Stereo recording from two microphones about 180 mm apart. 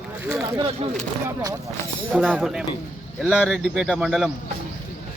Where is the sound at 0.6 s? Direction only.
35° right (ahead or behind).